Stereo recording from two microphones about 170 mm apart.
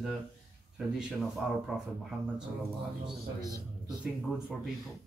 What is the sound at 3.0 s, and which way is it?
Speech, 25° right (ahead or behind).